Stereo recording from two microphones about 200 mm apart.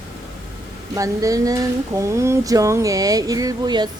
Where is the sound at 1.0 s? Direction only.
15° right (ahead or behind).